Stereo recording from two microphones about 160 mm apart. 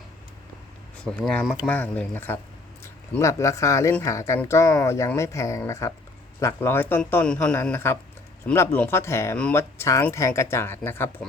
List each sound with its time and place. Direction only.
0.9 s speech: 5° left (ahead or behind)